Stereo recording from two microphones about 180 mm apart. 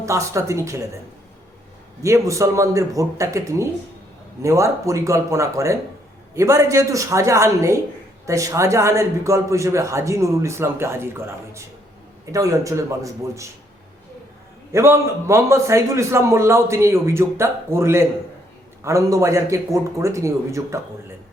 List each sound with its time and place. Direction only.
0.0 s a man's voice: 15° right (ahead or behind)
2.0 s a man's voice: 15° right (ahead or behind)
14.7 s a man's voice: 15° right (ahead or behind)